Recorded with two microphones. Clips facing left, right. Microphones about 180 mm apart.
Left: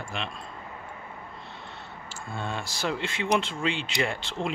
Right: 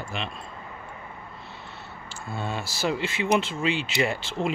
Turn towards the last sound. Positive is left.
turn(degrees=-5)  # may be behind; listen again after turning